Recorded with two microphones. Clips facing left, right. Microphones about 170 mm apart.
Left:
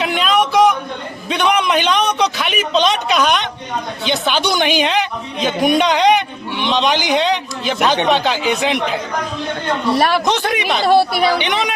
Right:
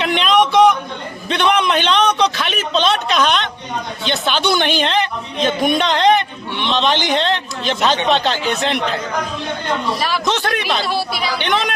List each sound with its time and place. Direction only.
0.0 s a sound: 5° left (ahead or behind)
4.0 s a man's voice: 15° left (ahead or behind)
10.0 s speech: 55° left (ahead or behind)
10.2 s a man's voice: 15° left (ahead or behind)
10.8 s speech: 55° left (ahead or behind)
11.3 s a man's voice: 15° left (ahead or behind)